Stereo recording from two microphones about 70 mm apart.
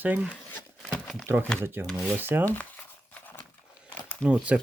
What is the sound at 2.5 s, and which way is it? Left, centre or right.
Speech, left.